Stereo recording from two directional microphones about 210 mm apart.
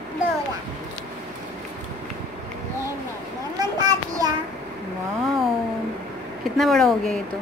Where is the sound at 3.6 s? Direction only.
20° right (ahead or behind).